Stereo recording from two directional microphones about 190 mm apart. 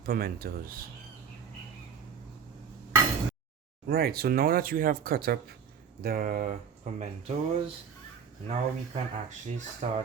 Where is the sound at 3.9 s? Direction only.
55° right (ahead or behind).